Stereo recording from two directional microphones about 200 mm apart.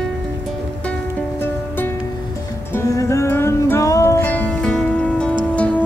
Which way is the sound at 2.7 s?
15° left (ahead or behind).